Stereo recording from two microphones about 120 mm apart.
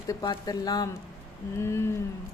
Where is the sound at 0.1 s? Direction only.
35° left (ahead or behind).